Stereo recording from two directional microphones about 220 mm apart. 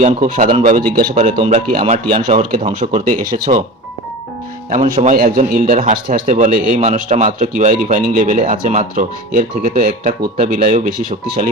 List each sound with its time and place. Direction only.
0.0 s a man's voice: 35° right (ahead or behind)
1.1 s a man's voice: 30° right (ahead or behind)
4.7 s a man's voice: 30° right (ahead or behind)